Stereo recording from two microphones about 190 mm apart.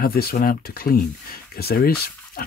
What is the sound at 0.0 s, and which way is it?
Speech, 55° left (ahead or behind).